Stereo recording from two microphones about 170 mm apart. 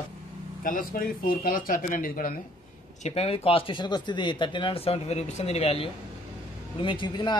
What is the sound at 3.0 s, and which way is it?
A man's voice, 40° left (ahead or behind).